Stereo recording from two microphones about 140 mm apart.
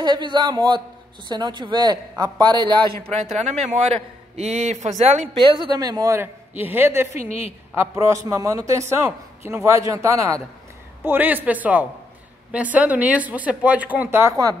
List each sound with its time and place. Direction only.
0.0 s speech: 30° right (ahead or behind)
3.4 s a man's voice: 50° right (ahead or behind)
5.4 s a man's voice: 35° right (ahead or behind); by 14.4 s 15° right (ahead or behind)